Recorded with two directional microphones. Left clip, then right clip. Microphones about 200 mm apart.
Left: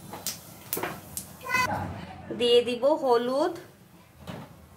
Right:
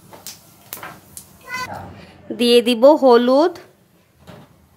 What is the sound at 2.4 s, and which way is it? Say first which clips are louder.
Speech: right 9 dB; 50° right (ahead or behind).